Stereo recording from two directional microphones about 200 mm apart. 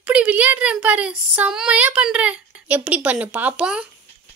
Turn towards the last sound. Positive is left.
turn(degrees=-5)  # may be behind; listen again after turning